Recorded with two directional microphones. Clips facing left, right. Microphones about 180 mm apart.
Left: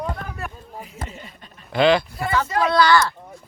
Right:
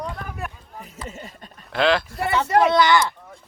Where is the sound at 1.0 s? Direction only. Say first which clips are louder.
Right 3 dB; 45° right (ahead or behind).